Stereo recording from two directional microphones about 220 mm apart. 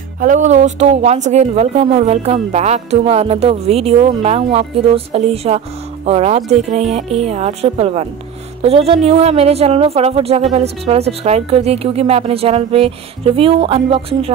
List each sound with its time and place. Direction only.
0.2 s a woman's voice: 35° right (ahead or behind)